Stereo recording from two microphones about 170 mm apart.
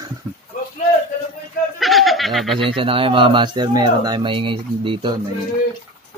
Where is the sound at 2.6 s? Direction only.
30° right (ahead or behind).